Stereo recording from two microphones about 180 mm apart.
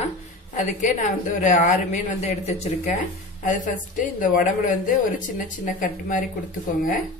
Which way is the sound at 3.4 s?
45° left (ahead or behind).